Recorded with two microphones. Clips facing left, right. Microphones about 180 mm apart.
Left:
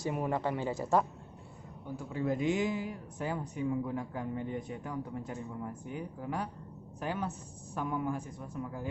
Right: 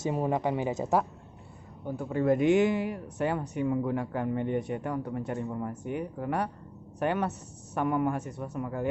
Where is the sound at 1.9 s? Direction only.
60° right (ahead or behind).